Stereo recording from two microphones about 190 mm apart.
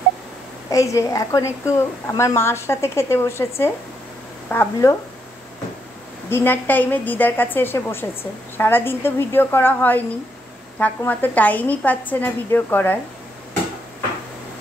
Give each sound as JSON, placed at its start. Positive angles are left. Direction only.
{"t": 0.7, "sound": "a woman's voice", "side_deg": 15}
{"t": 6.3, "sound": "a woman's voice", "side_deg": 10}